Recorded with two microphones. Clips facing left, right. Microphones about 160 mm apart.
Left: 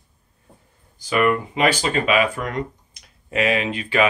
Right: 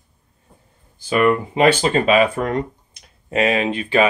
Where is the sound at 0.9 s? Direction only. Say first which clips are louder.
Right 3 dB; 30° right (ahead or behind).